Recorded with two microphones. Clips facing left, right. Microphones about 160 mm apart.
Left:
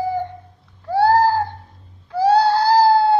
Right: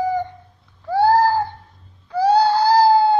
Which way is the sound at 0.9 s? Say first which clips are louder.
Even; 5° left (ahead or behind).